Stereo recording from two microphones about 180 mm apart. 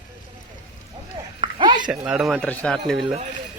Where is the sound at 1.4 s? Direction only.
25° right (ahead or behind).